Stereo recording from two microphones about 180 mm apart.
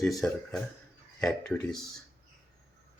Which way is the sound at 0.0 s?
Centre (ahead or behind).